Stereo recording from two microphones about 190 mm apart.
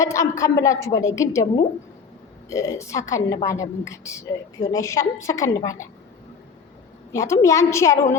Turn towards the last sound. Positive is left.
turn(degrees=15)  # may be behind; listen again after turning